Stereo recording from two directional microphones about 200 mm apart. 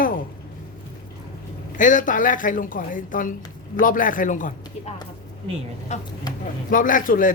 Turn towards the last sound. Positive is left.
turn(degrees=40)  # may be behind; listen again after turning